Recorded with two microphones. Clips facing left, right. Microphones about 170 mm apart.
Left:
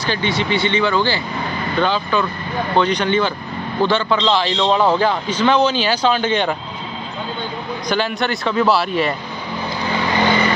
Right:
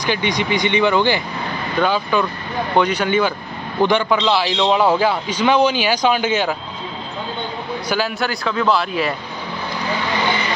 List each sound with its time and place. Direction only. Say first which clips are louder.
0.0 s a man's voice: even; 15° right (ahead or behind)
7.9 s a man's voice: left 2 dB; 5° right (ahead or behind)